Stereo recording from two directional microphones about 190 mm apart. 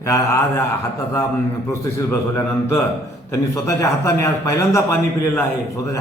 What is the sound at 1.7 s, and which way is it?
A man's voice, 15° left (ahead or behind).